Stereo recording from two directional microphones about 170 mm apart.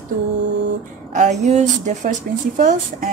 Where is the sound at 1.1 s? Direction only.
45° right (ahead or behind).